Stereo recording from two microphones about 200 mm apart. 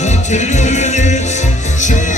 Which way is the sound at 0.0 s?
35° left (ahead or behind).